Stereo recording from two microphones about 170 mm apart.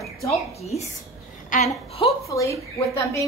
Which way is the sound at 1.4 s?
50° left (ahead or behind).